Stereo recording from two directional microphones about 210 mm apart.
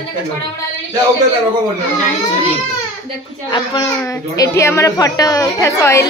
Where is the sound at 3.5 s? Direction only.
20° left (ahead or behind).